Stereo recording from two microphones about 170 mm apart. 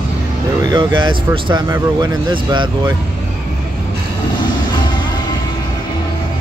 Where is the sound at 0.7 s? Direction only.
25° right (ahead or behind).